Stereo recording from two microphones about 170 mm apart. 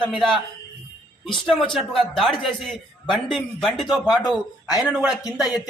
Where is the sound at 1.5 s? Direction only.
5° left (ahead or behind).